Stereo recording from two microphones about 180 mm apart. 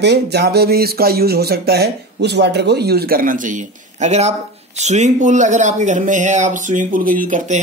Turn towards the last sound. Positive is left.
turn(degrees=-45)  # may be behind; listen again after turning